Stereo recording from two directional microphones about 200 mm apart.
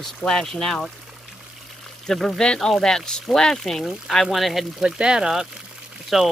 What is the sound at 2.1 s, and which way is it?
Speech, 5° left (ahead or behind).